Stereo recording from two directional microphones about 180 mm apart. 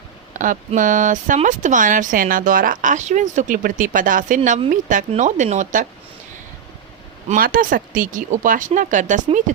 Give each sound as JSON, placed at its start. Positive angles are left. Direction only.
{"t": 0.3, "sound": "speech", "side_deg": -45}
{"t": 7.3, "sound": "speech", "side_deg": -55}